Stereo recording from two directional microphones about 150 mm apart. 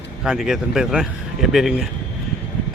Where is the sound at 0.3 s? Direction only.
5° right (ahead or behind).